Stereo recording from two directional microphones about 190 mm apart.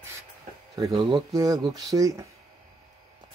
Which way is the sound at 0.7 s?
20° right (ahead or behind).